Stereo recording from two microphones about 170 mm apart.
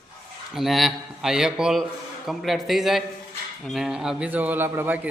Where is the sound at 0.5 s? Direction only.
Centre (ahead or behind).